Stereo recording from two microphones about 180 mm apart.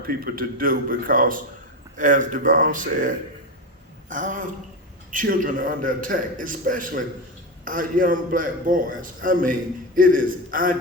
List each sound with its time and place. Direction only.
0.0 s a man's voice: 55° right (ahead or behind)